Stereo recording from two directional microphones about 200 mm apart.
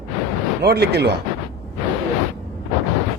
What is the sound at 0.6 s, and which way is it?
Speech, 55° right (ahead or behind).